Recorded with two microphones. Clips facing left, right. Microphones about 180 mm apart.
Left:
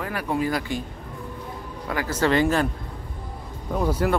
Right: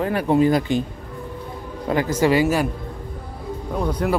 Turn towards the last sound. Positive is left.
turn(degrees=0)  # may be behind; listen again after turning